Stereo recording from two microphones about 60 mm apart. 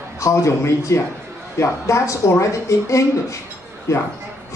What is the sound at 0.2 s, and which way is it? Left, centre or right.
A man's voice, left.